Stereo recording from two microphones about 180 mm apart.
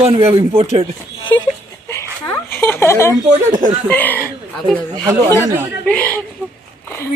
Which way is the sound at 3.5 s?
45° right (ahead or behind).